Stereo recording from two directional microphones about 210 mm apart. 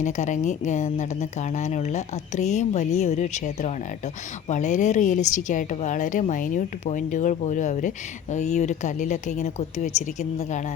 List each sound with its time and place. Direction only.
0.0 s a woman's voice: 35° left (ahead or behind)